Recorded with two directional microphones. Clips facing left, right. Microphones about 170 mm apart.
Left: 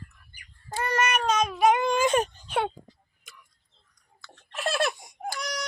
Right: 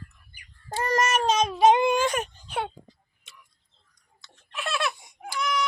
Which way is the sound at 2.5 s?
90° left.